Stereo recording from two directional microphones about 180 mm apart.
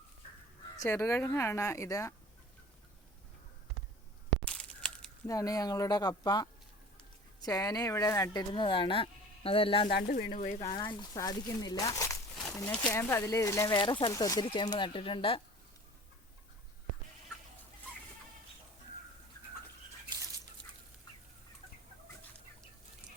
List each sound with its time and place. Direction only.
0.8 s a woman's voice: 15° left (ahead or behind)
4.4 s crunch: 5° left (ahead or behind)
5.2 s speech: 20° left (ahead or behind)
10.1 s speech: 55° left (ahead or behind)
10.6 s a woman's voice: 25° left (ahead or behind)
13.7 s speech: 25° left (ahead or behind)
20.1 s a sound: 20° right (ahead or behind)